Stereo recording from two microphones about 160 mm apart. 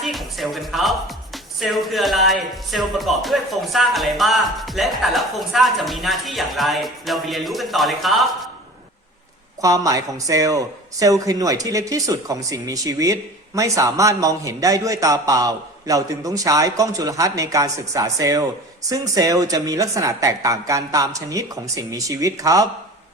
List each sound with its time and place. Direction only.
0.0 s speech: centre (ahead or behind)
9.6 s a man's voice: 20° right (ahead or behind)